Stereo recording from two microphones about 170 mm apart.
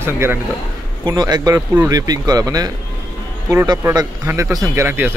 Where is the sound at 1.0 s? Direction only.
25° right (ahead or behind).